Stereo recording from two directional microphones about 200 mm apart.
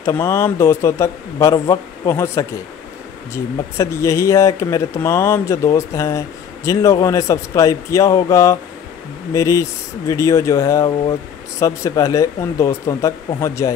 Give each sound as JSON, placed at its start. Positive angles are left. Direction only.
{"t": 0.0, "sound": "speech", "side_deg": 15}
{"t": 3.7, "sound": "speech", "side_deg": 15}